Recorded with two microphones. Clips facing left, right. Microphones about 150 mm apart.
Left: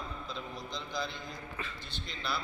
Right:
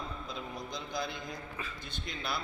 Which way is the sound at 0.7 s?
50° right (ahead or behind).